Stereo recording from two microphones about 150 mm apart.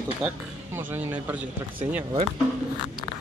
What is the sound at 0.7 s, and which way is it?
Speech, 10° right (ahead or behind).